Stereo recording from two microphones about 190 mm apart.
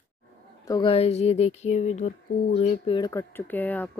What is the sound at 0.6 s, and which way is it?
Speech, 25° left (ahead or behind).